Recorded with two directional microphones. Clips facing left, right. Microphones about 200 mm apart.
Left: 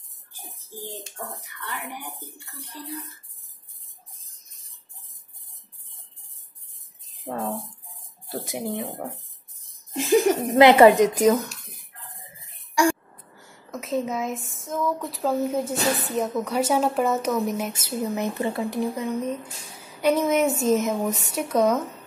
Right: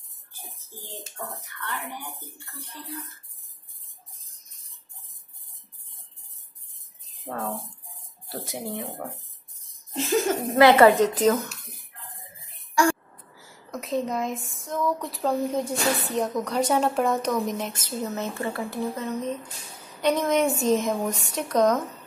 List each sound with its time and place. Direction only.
1.4 s speech: 10° left (ahead or behind)
7.2 s speech: 10° left (ahead or behind)
9.9 s speech: 15° left (ahead or behind)
12.8 s a sound: 15° left (ahead or behind)
13.3 s speech: centre (ahead or behind)